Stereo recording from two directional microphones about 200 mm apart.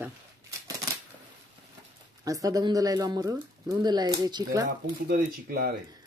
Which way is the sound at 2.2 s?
15° right (ahead or behind).